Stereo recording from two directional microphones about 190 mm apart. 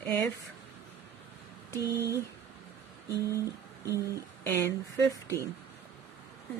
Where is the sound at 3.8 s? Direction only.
15° right (ahead or behind).